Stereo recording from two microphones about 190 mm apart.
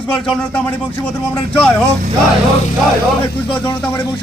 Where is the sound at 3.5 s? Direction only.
25° left (ahead or behind).